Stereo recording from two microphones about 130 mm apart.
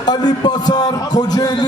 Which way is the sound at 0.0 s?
35° left (ahead or behind).